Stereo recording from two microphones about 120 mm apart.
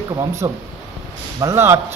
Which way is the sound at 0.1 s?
30° right (ahead or behind).